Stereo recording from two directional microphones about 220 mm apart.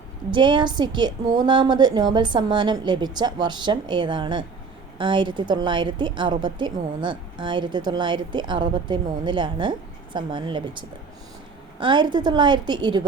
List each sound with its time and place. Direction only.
0.3 s a woman's voice: 20° right (ahead or behind)